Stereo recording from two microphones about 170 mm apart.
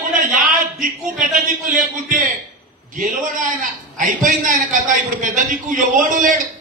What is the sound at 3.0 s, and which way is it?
A man's voice, 50° right (ahead or behind).